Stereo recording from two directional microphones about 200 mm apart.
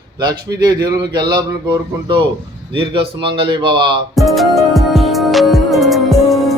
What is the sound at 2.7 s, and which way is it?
A man's voice, 25° right (ahead or behind).